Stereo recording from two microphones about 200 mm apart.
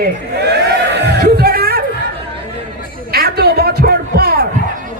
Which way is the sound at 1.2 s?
50° right (ahead or behind).